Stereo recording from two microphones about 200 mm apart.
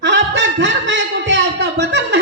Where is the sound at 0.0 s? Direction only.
65° right (ahead or behind).